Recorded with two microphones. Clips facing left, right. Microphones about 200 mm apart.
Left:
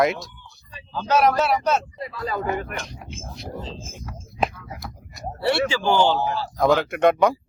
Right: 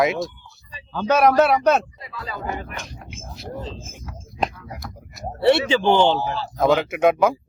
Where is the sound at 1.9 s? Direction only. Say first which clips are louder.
Left 6 dB; 45° left (ahead or behind).